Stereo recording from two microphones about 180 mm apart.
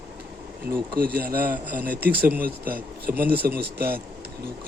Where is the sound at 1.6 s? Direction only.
10° right (ahead or behind).